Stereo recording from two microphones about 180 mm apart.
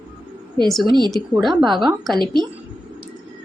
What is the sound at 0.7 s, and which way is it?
Speech, centre (ahead or behind).